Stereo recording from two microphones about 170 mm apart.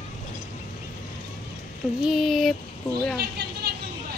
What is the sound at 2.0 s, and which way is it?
Speech, centre (ahead or behind).